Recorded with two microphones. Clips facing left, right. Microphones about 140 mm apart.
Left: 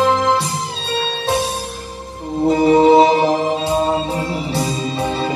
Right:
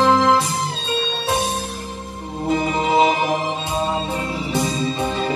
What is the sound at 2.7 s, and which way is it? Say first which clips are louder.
Music: left 9 dB; 35° left (ahead or behind).